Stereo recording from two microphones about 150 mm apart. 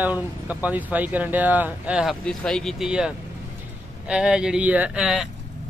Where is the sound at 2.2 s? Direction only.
5° left (ahead or behind).